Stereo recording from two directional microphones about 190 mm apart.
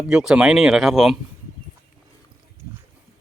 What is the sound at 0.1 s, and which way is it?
Speech, 5° right (ahead or behind).